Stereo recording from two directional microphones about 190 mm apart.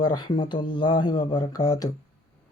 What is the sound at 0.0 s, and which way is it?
Speech, 20° left (ahead or behind).